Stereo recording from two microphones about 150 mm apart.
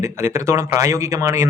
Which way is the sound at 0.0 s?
20° right (ahead or behind).